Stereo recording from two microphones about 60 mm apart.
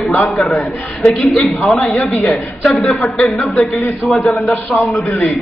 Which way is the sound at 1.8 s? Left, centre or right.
Left.